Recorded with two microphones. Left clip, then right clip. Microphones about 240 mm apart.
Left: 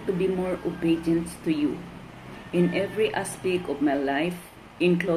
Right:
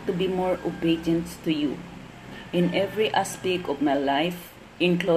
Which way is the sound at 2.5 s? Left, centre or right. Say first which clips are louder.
Right 1 dB; right.